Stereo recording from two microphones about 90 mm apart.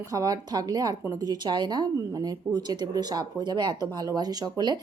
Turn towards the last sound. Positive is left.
turn(degrees=-50)  # may be behind; listen again after turning